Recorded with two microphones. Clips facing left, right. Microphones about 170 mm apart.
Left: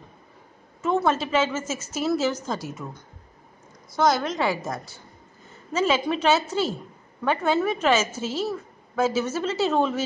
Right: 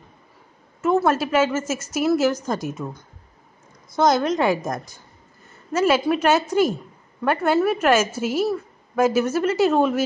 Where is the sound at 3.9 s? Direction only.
20° right (ahead or behind).